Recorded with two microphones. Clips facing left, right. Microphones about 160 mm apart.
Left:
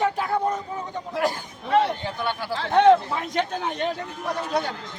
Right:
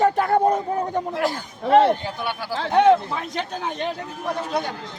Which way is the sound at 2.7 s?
10° right (ahead or behind).